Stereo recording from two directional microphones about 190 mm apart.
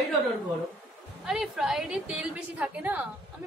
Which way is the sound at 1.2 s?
5° right (ahead or behind).